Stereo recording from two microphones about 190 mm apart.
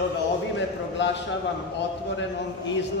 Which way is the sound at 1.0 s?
70° left (ahead or behind).